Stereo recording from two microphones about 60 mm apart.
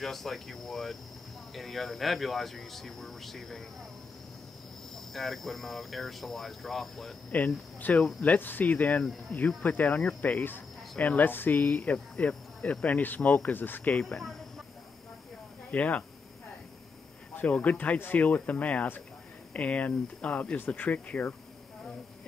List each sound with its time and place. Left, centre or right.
0.0 s speech: centre
5.1 s speech: centre
7.2 s speech: left
13.9 s speech: centre
15.7 s speech: left
17.4 s speech: left